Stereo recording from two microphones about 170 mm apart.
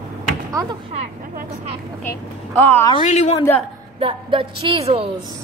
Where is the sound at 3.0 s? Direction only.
45° left (ahead or behind).